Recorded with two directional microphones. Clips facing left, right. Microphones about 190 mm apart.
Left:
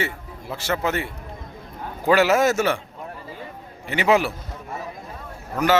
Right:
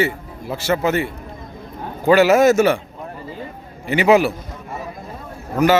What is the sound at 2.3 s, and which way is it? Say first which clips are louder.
Speech: right 6 dB; 15° right (ahead or behind).